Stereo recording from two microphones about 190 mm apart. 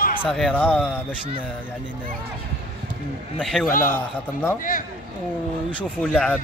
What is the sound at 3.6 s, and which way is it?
Speech, 45° left (ahead or behind).